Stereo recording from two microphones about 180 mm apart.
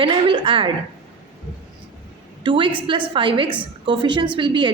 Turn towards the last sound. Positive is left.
turn(degrees=-30)  # may be behind; listen again after turning